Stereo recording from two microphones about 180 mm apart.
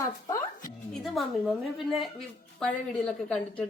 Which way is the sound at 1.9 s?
Centre (ahead or behind).